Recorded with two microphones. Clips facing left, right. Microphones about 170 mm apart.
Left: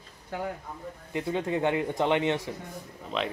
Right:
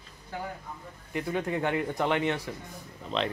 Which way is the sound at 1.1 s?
20° left (ahead or behind).